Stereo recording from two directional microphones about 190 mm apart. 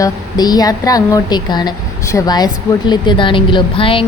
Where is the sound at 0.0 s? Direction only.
20° left (ahead or behind).